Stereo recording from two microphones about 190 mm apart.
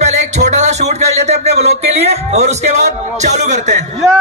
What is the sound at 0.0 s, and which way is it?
Music, 35° right (ahead or behind).